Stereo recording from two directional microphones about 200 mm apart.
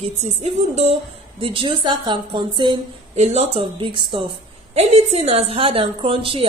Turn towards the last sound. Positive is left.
turn(degrees=-25)  # may be behind; listen again after turning